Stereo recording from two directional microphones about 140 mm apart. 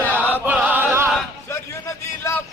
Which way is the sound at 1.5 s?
15° left (ahead or behind).